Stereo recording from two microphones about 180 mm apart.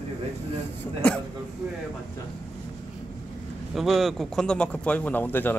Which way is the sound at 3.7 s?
Centre (ahead or behind).